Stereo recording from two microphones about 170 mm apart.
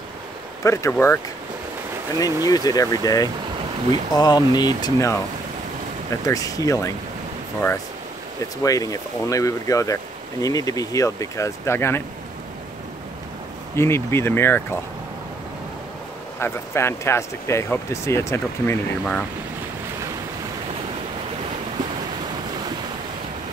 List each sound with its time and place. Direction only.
0.7 s speech: 15° left (ahead or behind)
2.4 s speech: 20° left (ahead or behind)
6.2 s speech: 20° left (ahead or behind)
8.6 s speech: 20° left (ahead or behind)
13.7 s speech: 15° left (ahead or behind)
16.3 s speech: 15° left (ahead or behind)